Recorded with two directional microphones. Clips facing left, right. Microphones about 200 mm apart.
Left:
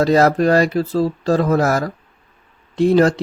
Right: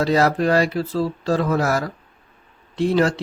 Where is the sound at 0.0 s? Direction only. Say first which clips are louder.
Left 4 dB; 45° left (ahead or behind).